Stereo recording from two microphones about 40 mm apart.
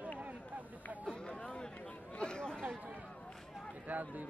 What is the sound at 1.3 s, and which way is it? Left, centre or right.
Chatter, left.